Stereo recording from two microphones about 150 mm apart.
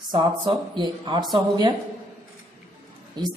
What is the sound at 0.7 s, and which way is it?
Speech, 30° right (ahead or behind).